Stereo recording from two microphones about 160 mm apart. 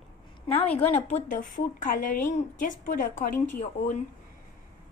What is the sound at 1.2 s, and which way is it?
A woman's voice, 60° left (ahead or behind).